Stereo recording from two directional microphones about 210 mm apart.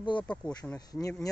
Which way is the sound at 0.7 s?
15° left (ahead or behind).